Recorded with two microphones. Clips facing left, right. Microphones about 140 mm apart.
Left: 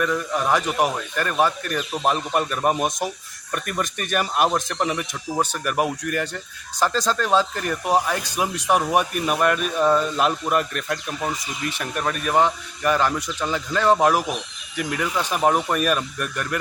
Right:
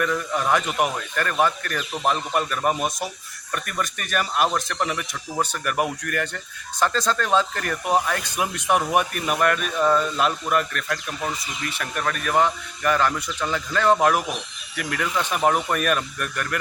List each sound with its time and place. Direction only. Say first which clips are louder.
0.0 s a man's voice: left 1 dB; 5° left (ahead or behind)
0.9 s speech: left 1 dB; 15° left (ahead or behind)
3.5 s speech: left 2 dB; 35° left (ahead or behind)
4.4 s speech: left 2 dB; 15° left (ahead or behind)
4.7 s speech: left 2 dB; 25° left (ahead or behind)
4.9 s speech: left 2 dB; 15° left (ahead or behind)